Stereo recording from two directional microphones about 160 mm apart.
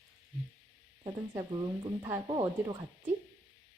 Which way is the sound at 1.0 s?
30° right (ahead or behind).